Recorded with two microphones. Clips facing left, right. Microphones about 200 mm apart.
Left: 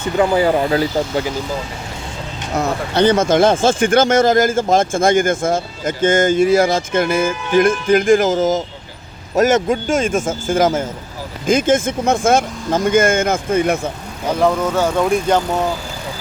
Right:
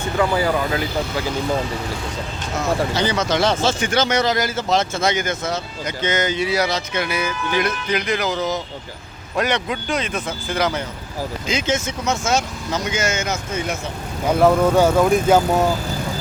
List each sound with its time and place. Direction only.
0.2 s speech: 30° left (ahead or behind)
2.6 s speech: 60° left (ahead or behind)
14.4 s speech: 10° right (ahead or behind)